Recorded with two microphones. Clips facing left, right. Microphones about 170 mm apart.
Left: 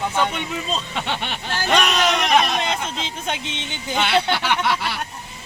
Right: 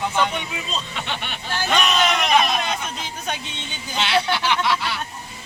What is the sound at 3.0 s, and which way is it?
Music, 20° left (ahead or behind).